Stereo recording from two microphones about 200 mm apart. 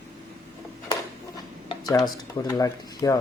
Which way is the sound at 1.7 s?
20° left (ahead or behind).